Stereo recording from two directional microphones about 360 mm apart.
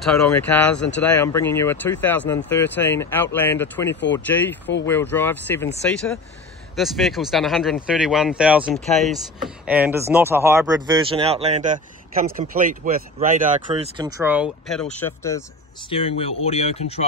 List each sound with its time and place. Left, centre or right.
0.0 s speech: centre
3.9 s speech: left
4.3 s speech: centre
6.7 s speech: centre